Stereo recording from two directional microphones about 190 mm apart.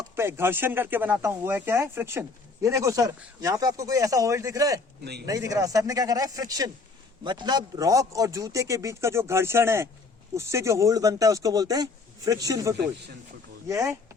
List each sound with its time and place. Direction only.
0.2 s speech: 10° right (ahead or behind)